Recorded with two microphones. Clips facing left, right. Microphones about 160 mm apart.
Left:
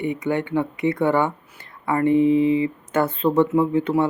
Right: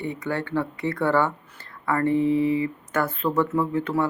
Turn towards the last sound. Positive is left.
turn(degrees=20)  # may be behind; listen again after turning